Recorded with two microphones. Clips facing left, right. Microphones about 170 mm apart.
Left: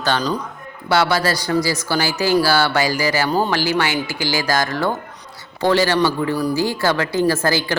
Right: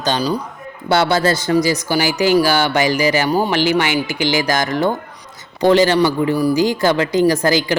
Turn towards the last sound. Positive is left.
turn(degrees=-15)  # may be behind; listen again after turning